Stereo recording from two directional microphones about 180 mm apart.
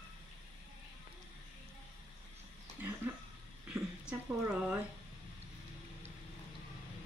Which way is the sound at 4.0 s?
5° right (ahead or behind).